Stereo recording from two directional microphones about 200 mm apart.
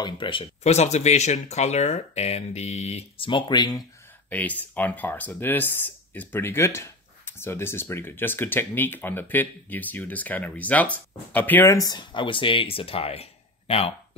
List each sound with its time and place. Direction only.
0.0 s speech: 25° left (ahead or behind)
4.3 s speech: 10° left (ahead or behind); by 13.9 s 30° left (ahead or behind)